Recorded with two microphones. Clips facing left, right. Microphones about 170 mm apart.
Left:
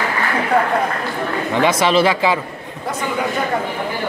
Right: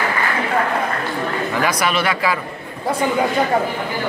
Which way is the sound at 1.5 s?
25° left (ahead or behind).